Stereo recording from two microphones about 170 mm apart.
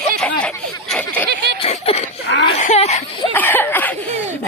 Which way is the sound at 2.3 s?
90° left.